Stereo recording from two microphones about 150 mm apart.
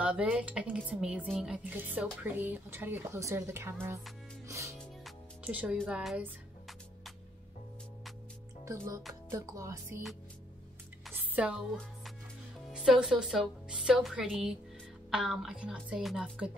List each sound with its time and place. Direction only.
0.0 s speech: 5° right (ahead or behind)
4.5 s music: 20° right (ahead or behind)
5.4 s speech: 10° right (ahead or behind)
8.6 s music: 20° right (ahead or behind)
11.1 s a sound: 10° right (ahead or behind)
12.7 s a woman's voice: 5° right (ahead or behind)